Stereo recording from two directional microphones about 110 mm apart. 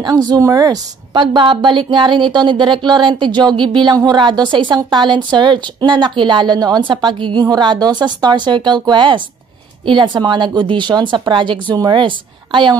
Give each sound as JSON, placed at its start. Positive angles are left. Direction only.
{"t": 0.0, "sound": "speech", "side_deg": -35}
{"t": 1.1, "sound": "a woman's voice", "side_deg": -45}